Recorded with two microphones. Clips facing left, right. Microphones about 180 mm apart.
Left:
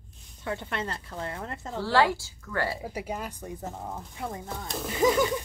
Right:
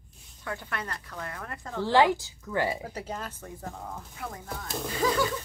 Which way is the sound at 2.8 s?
10° left (ahead or behind).